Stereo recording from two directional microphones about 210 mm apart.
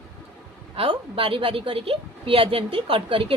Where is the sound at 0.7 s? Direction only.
25° right (ahead or behind).